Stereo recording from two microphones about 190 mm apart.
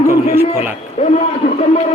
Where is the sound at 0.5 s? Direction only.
10° right (ahead or behind).